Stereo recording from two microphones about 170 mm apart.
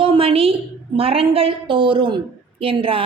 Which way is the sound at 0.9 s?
35° right (ahead or behind).